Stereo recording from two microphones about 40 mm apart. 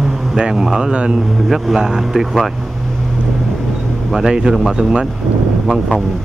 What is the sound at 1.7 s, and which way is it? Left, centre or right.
Speech, centre.